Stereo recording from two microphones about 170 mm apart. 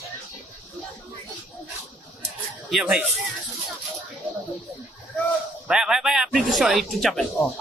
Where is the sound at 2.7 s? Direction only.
5° right (ahead or behind).